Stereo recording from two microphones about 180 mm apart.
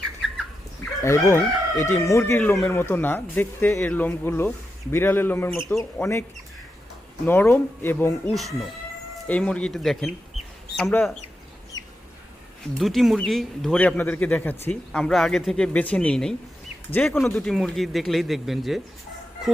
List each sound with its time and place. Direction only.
0.8 s chicken: 15° left (ahead or behind)
2.6 s speech: 5° left (ahead or behind)
7.3 s speech: 10° left (ahead or behind)
8.3 s speech: centre (ahead or behind)
11.7 s chicken: 20° left (ahead or behind)
12.8 s speech: centre (ahead or behind)